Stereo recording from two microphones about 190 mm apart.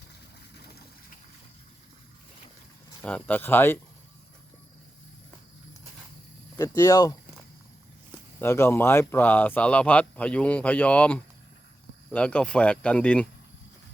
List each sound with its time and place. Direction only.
0.5 s water: 55° left (ahead or behind)
3.0 s speech: 5° left (ahead or behind)
6.6 s speech: 20° left (ahead or behind)
8.4 s speech: 15° left (ahead or behind)